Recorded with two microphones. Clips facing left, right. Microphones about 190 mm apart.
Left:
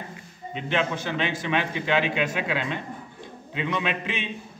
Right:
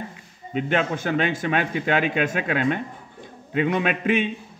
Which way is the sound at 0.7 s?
50° right (ahead or behind).